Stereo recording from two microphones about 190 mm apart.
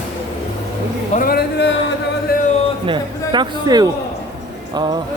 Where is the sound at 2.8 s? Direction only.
25° right (ahead or behind).